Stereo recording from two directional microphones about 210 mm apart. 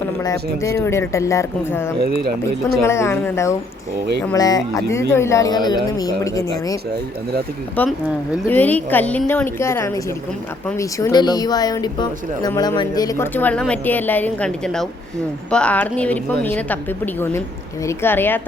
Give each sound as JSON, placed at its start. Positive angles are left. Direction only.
{"t": 0.2, "sound": "speech", "side_deg": 15}
{"t": 2.0, "sound": "speech", "side_deg": -50}
{"t": 2.8, "sound": "speech", "side_deg": 10}
{"t": 7.8, "sound": "speech", "side_deg": 5}
{"t": 17.8, "sound": "speech", "side_deg": 10}